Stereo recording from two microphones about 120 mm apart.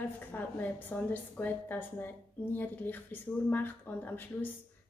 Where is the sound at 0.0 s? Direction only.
15° left (ahead or behind).